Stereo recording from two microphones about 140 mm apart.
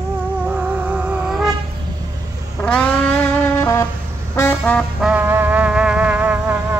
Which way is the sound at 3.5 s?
20° left (ahead or behind).